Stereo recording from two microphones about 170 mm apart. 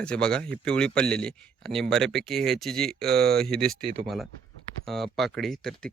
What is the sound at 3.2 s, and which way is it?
Speech, 65° right (ahead or behind).